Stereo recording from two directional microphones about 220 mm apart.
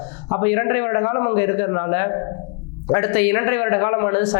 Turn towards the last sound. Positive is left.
turn(degrees=20)  # may be behind; listen again after turning